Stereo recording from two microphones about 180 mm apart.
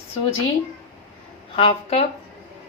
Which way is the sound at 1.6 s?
30° left (ahead or behind).